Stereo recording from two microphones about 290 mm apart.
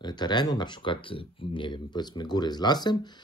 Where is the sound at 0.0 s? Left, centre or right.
Centre.